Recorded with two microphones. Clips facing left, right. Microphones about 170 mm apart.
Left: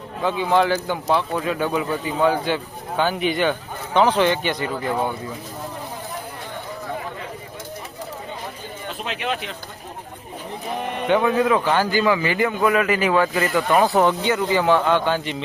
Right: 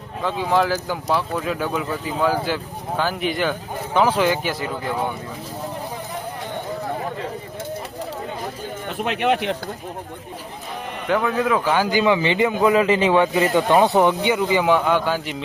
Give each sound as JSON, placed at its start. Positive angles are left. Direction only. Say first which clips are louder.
{"t": 0.3, "sound": "speech", "louder": "left 1 dB", "side_deg": 0}
{"t": 8.9, "sound": "speech", "louder": "right 6 dB", "side_deg": -60}
{"t": 11.1, "sound": "speech", "louder": "left 2 dB", "side_deg": 5}
{"t": 11.6, "sound": "a man's voice", "louder": "right 1 dB", "side_deg": -10}